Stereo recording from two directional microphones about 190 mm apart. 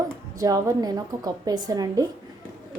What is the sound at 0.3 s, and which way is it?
A woman's voice, 20° right (ahead or behind).